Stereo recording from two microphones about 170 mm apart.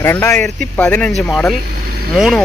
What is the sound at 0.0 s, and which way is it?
Speech, 15° left (ahead or behind).